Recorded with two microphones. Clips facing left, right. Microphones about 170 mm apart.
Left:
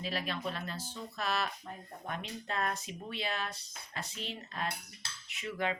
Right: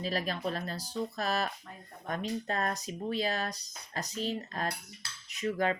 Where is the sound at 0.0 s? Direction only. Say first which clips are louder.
Right 4 dB; 40° right (ahead or behind).